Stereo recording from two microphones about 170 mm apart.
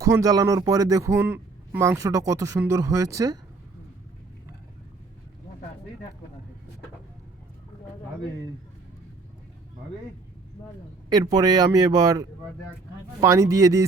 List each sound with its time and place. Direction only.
0.0 s a man's voice: 20° right (ahead or behind)
11.1 s a man's voice: 25° right (ahead or behind)